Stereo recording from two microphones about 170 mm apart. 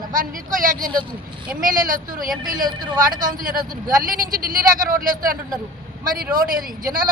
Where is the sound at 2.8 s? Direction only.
25° right (ahead or behind).